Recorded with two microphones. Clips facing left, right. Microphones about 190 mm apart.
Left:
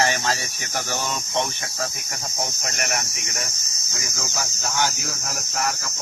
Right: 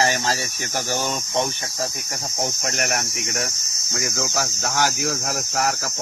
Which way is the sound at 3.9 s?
75° right (ahead or behind).